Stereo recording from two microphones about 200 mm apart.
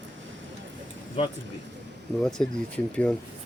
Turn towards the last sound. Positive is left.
turn(degrees=5)  # may be behind; listen again after turning